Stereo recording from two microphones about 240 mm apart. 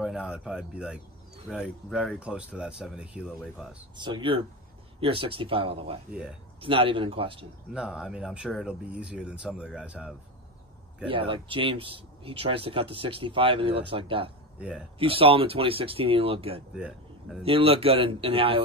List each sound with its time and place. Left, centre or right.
0.0 s speech: centre
3.9 s speech: centre
7.7 s speech: centre
11.1 s speech: right
14.6 s speech: centre
15.0 s speech: right
16.7 s speech: centre
17.4 s speech: right